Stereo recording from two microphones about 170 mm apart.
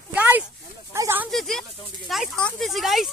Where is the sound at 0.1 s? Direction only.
10° right (ahead or behind).